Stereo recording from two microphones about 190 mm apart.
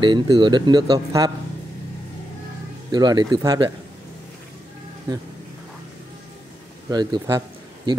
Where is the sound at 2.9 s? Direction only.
20° right (ahead or behind).